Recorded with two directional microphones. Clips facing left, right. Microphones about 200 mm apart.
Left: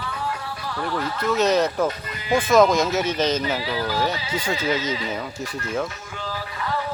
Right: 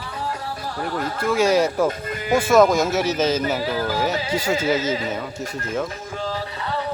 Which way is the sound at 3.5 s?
45° right (ahead or behind).